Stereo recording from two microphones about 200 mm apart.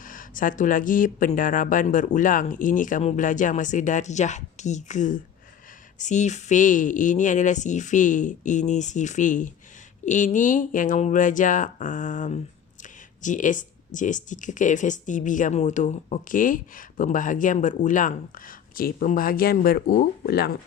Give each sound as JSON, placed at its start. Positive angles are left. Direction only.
{"t": 0.0, "sound": "speech", "side_deg": 40}